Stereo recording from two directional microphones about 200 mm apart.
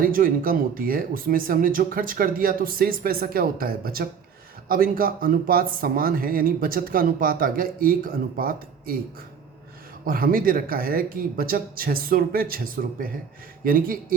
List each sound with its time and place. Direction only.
0.0 s speech: 45° right (ahead or behind)
10.1 s speech: 45° right (ahead or behind)